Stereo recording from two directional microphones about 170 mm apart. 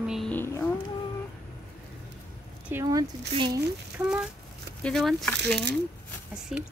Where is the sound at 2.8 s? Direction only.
25° right (ahead or behind).